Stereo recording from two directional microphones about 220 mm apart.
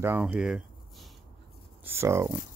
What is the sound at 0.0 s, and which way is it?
Speech, 10° right (ahead or behind).